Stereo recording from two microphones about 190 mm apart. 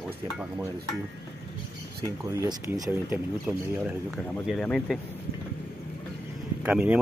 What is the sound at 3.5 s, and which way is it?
Speech, 5° right (ahead or behind).